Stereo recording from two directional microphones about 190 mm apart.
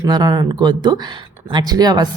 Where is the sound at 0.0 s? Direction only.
20° right (ahead or behind).